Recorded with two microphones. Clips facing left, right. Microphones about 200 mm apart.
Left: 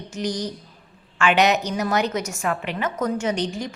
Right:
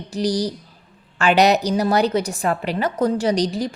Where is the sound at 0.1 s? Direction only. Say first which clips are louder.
Right 6 dB; 35° right (ahead or behind).